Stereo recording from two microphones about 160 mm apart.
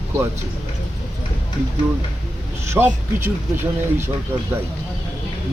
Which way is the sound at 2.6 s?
15° right (ahead or behind).